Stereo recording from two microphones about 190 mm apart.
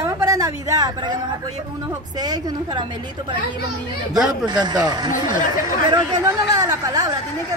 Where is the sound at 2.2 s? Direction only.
20° right (ahead or behind).